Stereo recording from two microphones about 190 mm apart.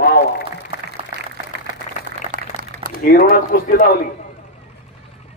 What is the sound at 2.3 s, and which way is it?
Liquid, 45° right (ahead or behind).